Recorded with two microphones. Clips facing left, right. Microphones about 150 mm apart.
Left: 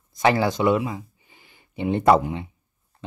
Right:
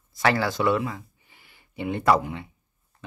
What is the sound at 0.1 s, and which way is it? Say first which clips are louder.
Speech: left 3 dB; 20° left (ahead or behind).